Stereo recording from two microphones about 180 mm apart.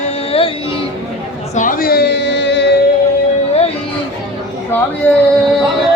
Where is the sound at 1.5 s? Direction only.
45° left (ahead or behind); by 2.7 s 75° left (ahead or behind).